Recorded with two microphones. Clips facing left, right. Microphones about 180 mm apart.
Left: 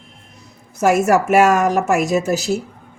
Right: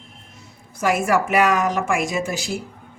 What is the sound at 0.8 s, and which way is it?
A woman's voice, 45° left (ahead or behind).